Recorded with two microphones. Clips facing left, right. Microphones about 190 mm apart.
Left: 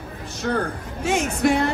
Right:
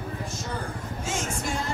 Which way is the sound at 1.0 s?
65° left (ahead or behind).